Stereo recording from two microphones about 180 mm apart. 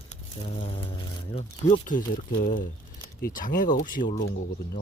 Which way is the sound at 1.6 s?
45° left (ahead or behind).